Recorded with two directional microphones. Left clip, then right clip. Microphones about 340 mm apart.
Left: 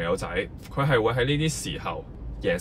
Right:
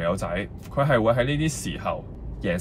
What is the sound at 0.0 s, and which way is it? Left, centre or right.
Speech, centre.